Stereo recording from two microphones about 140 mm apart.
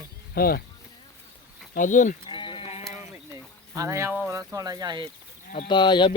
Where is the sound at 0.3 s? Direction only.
90° left.